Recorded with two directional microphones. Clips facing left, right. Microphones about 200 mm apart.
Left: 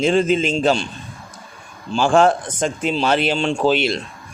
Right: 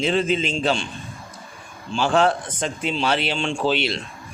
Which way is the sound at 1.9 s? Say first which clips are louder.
Left 4 dB; 45° left (ahead or behind).